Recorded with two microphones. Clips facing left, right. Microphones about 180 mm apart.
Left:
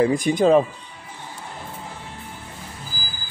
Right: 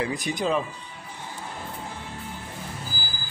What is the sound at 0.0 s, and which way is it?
Speech, 45° left (ahead or behind).